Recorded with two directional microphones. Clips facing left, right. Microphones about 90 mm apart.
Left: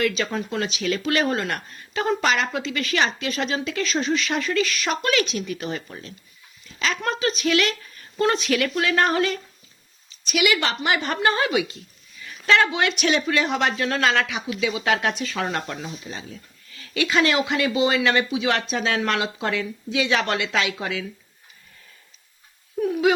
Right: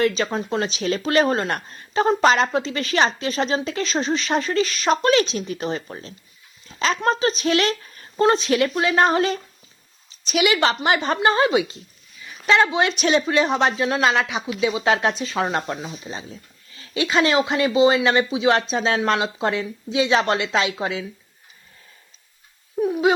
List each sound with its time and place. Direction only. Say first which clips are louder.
0.0 s speech: right 3 dB; 30° right (ahead or behind)
22.8 s speech: right 1 dB; 20° right (ahead or behind)